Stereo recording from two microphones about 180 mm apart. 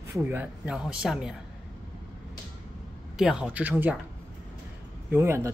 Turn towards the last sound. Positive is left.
turn(degrees=-15)  # may be behind; listen again after turning